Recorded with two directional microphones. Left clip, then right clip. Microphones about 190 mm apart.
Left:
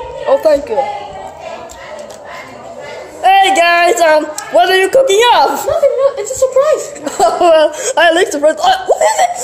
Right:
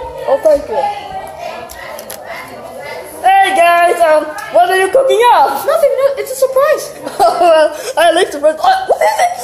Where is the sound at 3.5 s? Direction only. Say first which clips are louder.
Even; 65° left (ahead or behind).